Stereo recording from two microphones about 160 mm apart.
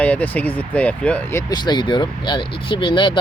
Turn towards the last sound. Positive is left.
turn(degrees=30)  # may be behind; listen again after turning